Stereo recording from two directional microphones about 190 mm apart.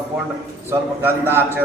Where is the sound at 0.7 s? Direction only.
10° right (ahead or behind).